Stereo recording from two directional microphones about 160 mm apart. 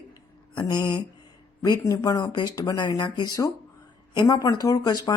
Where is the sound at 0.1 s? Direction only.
25° left (ahead or behind).